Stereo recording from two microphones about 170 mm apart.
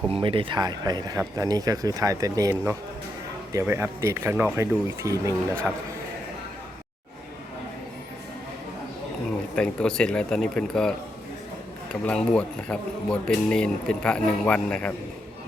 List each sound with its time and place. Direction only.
0.1 s speech: 30° right (ahead or behind)
5.7 s speech: 5° right (ahead or behind)
9.6 s speech: 5° left (ahead or behind)